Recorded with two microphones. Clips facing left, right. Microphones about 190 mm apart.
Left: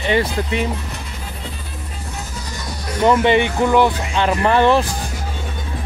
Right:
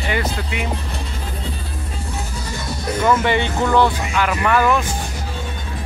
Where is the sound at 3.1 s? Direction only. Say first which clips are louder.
Left 4 dB; 20° left (ahead or behind).